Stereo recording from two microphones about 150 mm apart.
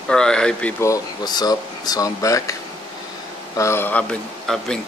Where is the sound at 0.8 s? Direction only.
25° left (ahead or behind).